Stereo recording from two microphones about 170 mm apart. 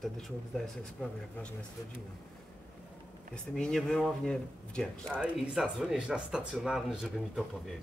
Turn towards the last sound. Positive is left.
turn(degrees=0)  # may be behind; listen again after turning